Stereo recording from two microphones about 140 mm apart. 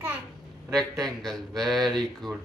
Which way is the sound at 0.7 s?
Centre (ahead or behind).